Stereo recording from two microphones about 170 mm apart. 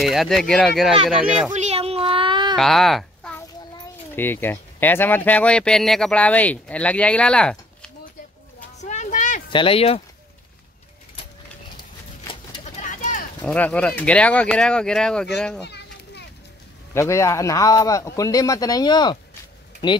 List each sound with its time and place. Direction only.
0.0 s speech: centre (ahead or behind)
1.5 s a sound: 40° right (ahead or behind)
2.5 s speech: centre (ahead or behind)
3.3 s speech: 20° left (ahead or behind)
8.8 s a sound: 45° left (ahead or behind)
9.5 s speech: 30° left (ahead or behind)
12.8 s a sound: 50° left (ahead or behind)
13.4 s speech: 5° left (ahead or behind)
15.6 s children playing: 80° left
16.9 s a man's voice: 15° left (ahead or behind)